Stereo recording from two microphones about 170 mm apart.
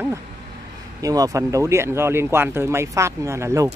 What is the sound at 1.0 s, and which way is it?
Speech, 20° right (ahead or behind).